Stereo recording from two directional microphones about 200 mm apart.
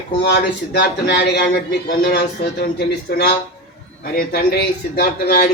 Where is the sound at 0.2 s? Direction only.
55° left (ahead or behind).